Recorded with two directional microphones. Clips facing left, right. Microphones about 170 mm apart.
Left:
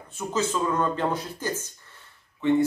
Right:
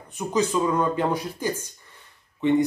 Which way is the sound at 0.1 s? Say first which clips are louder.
Right 4 dB; 15° right (ahead or behind).